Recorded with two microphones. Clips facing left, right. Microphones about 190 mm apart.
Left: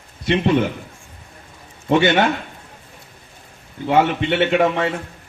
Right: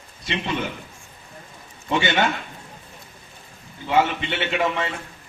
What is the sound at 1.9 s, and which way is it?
Speech, 55° left (ahead or behind).